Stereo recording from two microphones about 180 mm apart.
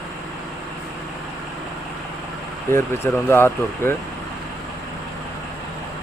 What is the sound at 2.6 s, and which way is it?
Speech, 15° left (ahead or behind).